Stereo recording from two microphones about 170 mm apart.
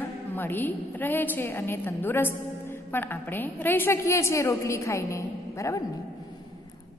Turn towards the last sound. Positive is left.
turn(degrees=15)  # may be behind; listen again after turning